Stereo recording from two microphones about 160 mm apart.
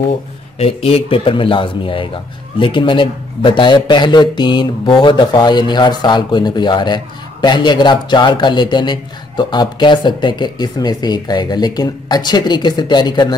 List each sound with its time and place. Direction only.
0.6 s a man's voice: 35° left (ahead or behind)